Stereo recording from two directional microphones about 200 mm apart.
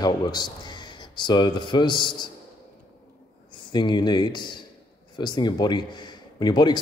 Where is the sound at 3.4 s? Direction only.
25° left (ahead or behind).